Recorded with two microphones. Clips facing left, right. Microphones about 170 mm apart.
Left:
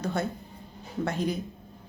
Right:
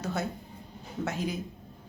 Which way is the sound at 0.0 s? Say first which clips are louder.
Left 3 dB; 5° right (ahead or behind).